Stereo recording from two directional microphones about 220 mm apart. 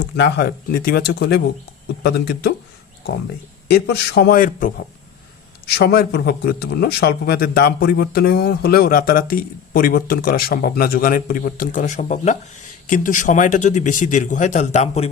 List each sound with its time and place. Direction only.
0.2 s speech: 50° left (ahead or behind)
3.7 s speech: 50° left (ahead or behind); by 15.1 s 30° left (ahead or behind)